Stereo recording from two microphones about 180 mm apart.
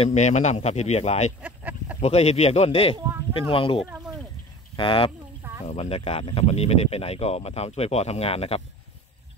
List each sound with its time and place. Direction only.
0.0 s speech: 40° left (ahead or behind)
1.4 s a sound: 10° right (ahead or behind)
2.0 s speech: 35° left (ahead or behind)